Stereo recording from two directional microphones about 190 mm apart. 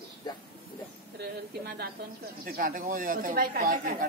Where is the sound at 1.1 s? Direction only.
55° right (ahead or behind).